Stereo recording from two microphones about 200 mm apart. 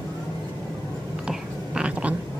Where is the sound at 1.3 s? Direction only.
5° right (ahead or behind).